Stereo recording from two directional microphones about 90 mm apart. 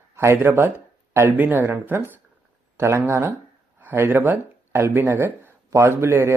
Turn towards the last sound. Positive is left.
turn(degrees=-25)  # may be behind; listen again after turning